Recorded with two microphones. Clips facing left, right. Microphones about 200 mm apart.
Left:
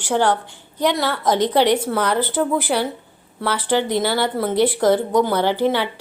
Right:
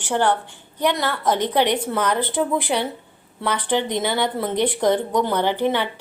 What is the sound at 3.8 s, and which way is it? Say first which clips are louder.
Speech: left 3 dB; 20° right (ahead or behind).